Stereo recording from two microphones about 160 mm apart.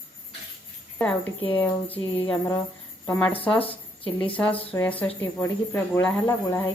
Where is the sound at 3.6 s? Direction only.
35° left (ahead or behind).